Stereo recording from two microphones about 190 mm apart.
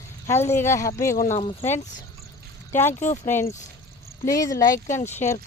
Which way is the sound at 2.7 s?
10° left (ahead or behind).